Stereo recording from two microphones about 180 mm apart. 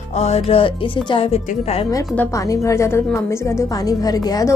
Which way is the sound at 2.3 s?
15° left (ahead or behind).